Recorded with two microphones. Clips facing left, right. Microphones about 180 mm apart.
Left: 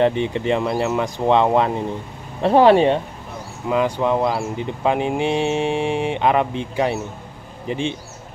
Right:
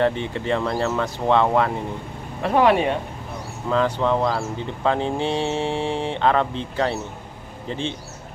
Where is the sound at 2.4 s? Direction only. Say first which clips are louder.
Left 5 dB; 30° left (ahead or behind).